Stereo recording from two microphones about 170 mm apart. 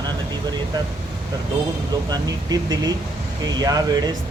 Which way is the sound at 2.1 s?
20° right (ahead or behind).